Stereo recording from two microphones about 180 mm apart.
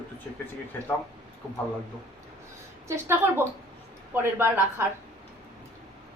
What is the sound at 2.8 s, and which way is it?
A woman's voice, 15° right (ahead or behind).